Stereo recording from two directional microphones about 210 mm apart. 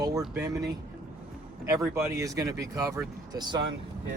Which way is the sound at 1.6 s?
15° right (ahead or behind).